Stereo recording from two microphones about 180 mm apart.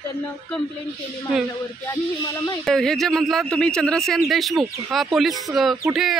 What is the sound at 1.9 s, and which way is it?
Speech, 15° left (ahead or behind).